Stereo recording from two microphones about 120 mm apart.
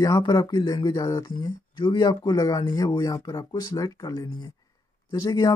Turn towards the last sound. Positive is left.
turn(degrees=30)  # may be behind; listen again after turning